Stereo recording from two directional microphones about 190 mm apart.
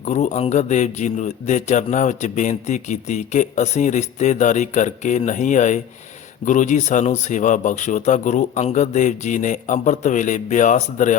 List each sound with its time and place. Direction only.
0.0 s a man's voice: 40° left (ahead or behind)